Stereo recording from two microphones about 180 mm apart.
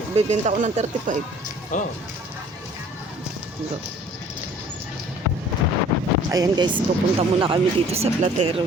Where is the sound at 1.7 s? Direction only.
45° left (ahead or behind).